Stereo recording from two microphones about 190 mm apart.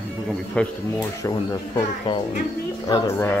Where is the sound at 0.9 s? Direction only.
20° left (ahead or behind).